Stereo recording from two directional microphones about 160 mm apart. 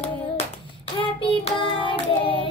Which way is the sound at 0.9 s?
35° left (ahead or behind).